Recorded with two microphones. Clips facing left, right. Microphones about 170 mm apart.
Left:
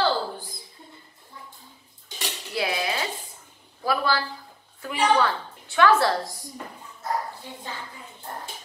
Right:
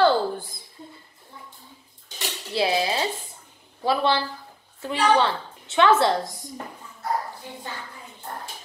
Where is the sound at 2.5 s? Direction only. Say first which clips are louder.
Right 4 dB; 30° right (ahead or behind).